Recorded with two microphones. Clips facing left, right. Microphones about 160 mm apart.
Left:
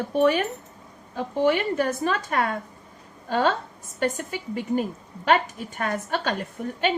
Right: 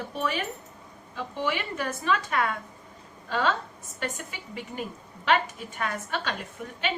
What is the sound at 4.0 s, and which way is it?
A woman's voice, 40° left (ahead or behind).